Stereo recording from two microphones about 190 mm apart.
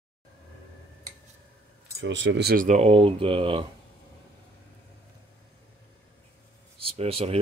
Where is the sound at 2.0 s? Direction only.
70° right (ahead or behind); by 2.8 s 50° right (ahead or behind).